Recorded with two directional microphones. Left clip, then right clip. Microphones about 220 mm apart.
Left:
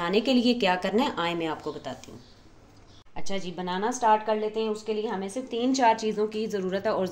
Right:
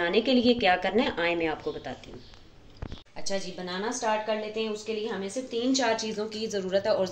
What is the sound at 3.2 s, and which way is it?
Speech, 50° left (ahead or behind).